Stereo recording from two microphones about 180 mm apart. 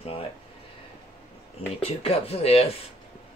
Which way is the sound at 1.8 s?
35° left (ahead or behind).